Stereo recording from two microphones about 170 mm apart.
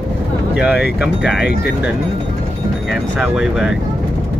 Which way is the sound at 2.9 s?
5° right (ahead or behind).